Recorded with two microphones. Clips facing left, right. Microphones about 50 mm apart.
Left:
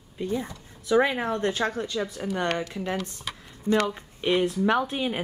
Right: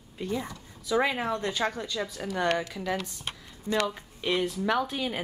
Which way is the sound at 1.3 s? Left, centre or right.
Left.